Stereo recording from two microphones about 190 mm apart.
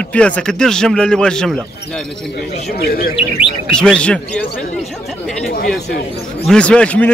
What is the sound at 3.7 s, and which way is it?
Speech, 5° left (ahead or behind).